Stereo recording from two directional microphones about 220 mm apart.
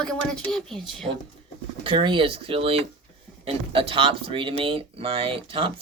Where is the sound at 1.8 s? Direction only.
20° right (ahead or behind).